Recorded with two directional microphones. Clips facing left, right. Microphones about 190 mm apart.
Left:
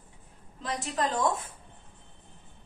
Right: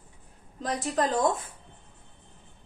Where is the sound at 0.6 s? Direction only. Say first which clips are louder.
Right 4 dB; 40° right (ahead or behind).